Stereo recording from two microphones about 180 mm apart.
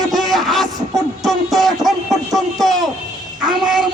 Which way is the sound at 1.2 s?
Centre (ahead or behind).